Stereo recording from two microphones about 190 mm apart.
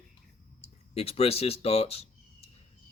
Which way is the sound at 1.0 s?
30° left (ahead or behind).